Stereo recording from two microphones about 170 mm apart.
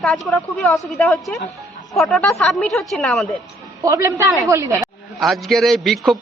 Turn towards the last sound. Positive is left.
turn(degrees=0)  # may be behind; listen again after turning